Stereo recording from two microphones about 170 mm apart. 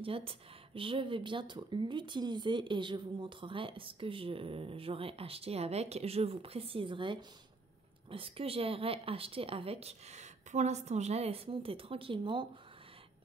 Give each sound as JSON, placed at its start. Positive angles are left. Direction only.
{"t": 0.0, "sound": "speech", "side_deg": -30}